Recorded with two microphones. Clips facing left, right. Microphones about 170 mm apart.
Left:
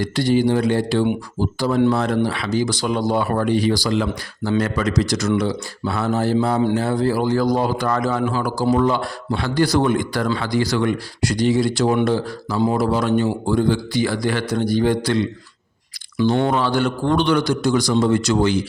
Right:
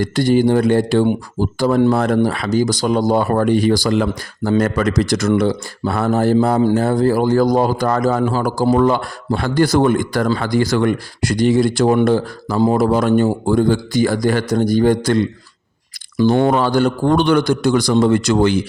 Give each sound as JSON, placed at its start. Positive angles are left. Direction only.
{"t": 0.0, "sound": "speech", "side_deg": -50}